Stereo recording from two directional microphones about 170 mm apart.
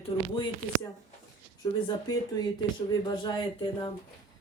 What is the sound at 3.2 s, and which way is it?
Speech, 25° left (ahead or behind).